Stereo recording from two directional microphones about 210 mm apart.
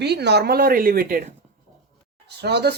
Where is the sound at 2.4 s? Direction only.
50° right (ahead or behind).